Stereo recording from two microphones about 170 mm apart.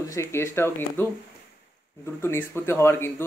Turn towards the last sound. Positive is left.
turn(degrees=15)  # may be behind; listen again after turning